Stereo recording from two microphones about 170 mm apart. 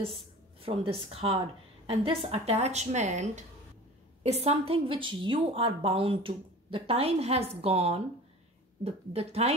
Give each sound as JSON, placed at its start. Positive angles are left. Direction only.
{"t": 0.0, "sound": "a woman's voice", "side_deg": -30}